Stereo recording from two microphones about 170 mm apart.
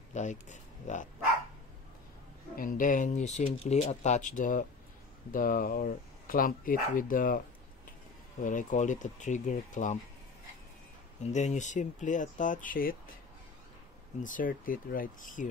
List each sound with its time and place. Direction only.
0.1 s speech: 45° left (ahead or behind)
2.5 s speech: 55° left (ahead or behind)
11.3 s speech: 45° left (ahead or behind)
14.2 s speech: 50° left (ahead or behind)